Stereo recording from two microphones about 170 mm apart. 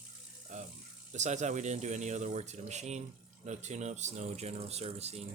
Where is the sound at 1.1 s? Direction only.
45° right (ahead or behind).